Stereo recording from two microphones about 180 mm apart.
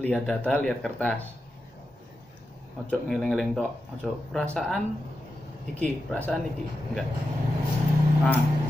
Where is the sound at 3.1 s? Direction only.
Centre (ahead or behind).